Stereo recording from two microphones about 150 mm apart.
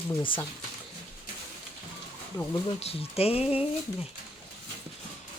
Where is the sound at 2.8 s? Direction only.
40° left (ahead or behind).